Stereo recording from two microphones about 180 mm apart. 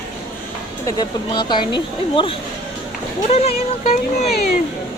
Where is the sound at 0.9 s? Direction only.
25° left (ahead or behind).